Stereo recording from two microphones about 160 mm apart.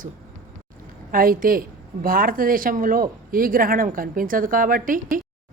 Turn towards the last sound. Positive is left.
turn(degrees=-60)  # may be behind; listen again after turning